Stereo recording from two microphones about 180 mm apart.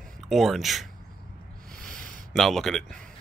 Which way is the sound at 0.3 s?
Centre (ahead or behind).